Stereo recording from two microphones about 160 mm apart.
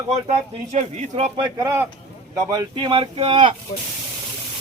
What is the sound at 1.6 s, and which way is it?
Speech, 15° right (ahead or behind).